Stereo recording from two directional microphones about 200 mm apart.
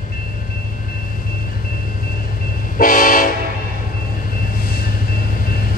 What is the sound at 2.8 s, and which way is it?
Train, 40° left (ahead or behind).